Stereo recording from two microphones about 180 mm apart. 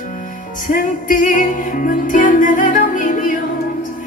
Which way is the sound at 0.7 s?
50° left (ahead or behind).